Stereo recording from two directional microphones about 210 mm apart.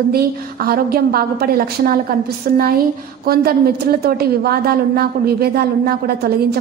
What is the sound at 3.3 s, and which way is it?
A woman's voice, 45° right (ahead or behind).